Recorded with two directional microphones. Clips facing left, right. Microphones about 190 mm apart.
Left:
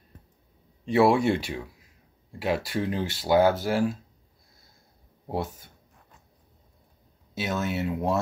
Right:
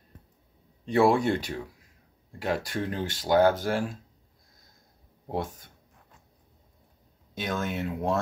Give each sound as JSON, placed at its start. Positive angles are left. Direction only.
{"t": 0.8, "sound": "speech", "side_deg": 10}
{"t": 5.3, "sound": "speech", "side_deg": 5}
{"t": 7.3, "sound": "speech", "side_deg": 5}